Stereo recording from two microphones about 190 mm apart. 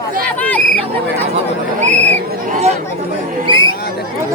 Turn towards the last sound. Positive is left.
turn(degrees=-25)  # may be behind; listen again after turning